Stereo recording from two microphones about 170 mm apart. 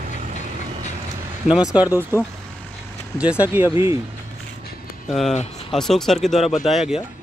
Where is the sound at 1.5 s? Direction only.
5° right (ahead or behind).